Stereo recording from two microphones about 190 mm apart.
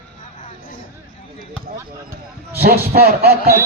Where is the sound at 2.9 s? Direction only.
55° right (ahead or behind).